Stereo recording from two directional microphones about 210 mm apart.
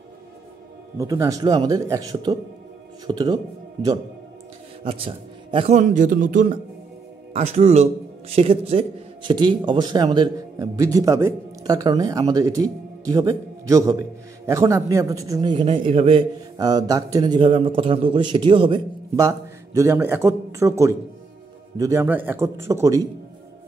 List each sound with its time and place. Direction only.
0.9 s a man's voice: 15° right (ahead or behind)
4.8 s a man's voice: 25° right (ahead or behind)